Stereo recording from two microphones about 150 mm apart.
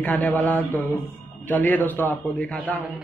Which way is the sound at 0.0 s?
10° left (ahead or behind).